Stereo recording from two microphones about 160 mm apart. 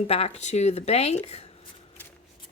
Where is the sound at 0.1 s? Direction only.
40° left (ahead or behind).